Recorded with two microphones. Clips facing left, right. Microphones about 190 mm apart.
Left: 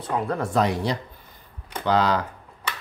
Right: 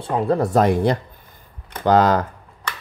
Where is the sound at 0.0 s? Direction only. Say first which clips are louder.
Right 6 dB; 30° right (ahead or behind); by 2.2 s 45° right (ahead or behind).